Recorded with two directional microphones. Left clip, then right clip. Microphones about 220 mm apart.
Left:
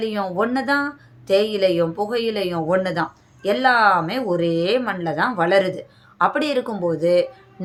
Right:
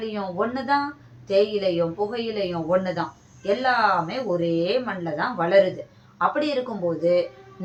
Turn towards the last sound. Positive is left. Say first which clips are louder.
# left 3 dB
turn(degrees=45)  # may be behind; listen again after turning